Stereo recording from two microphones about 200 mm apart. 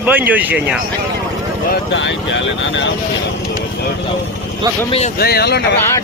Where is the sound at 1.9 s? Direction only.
65° left (ahead or behind).